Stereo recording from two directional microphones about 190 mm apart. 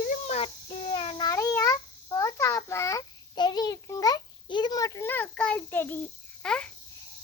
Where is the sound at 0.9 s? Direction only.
25° left (ahead or behind); by 6.7 s 5° left (ahead or behind).